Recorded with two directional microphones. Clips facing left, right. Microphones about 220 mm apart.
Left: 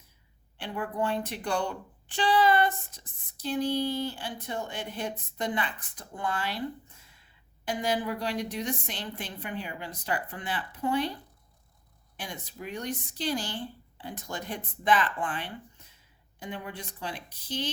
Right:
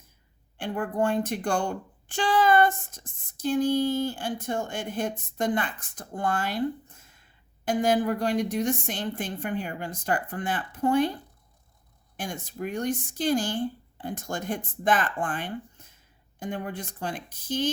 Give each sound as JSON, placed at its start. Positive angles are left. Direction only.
{"t": 0.5, "sound": "speech", "side_deg": -50}
{"t": 12.1, "sound": "speech", "side_deg": -50}